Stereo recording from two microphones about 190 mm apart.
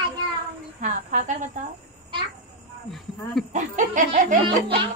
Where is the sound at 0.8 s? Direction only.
40° right (ahead or behind).